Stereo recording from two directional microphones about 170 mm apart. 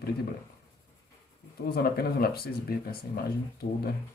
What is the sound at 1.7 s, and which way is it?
Speech, 65° left (ahead or behind).